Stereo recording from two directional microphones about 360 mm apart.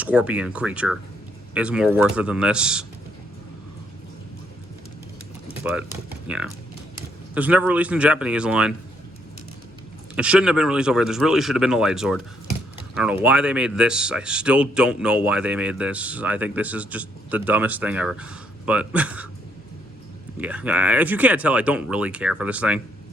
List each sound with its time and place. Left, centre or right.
0.0 s speech: centre
5.6 s speech: centre
10.2 s speech: centre
20.4 s speech: centre